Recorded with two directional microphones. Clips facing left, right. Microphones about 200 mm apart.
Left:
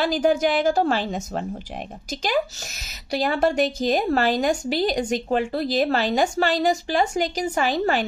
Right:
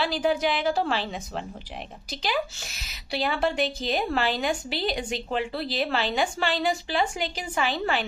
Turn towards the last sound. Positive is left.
turn(degrees=40)  # may be behind; listen again after turning